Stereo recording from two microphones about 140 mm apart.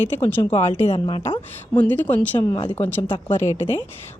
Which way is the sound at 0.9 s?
40° left (ahead or behind).